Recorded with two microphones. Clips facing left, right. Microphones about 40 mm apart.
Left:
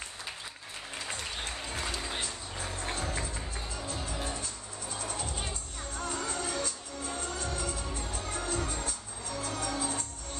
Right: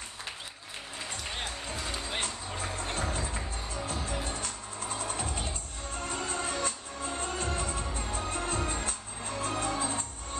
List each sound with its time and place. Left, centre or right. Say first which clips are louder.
2.1 s music: right 3 dB; right